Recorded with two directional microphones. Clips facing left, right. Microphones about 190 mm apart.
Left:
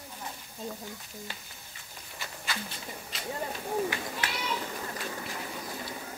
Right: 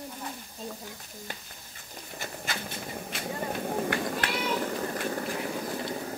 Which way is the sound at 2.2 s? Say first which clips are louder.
Right 2 dB; 50° right (ahead or behind).